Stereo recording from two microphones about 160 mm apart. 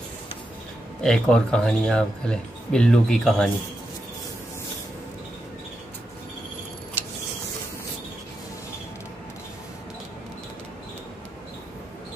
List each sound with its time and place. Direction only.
1.0 s speech: 5° left (ahead or behind)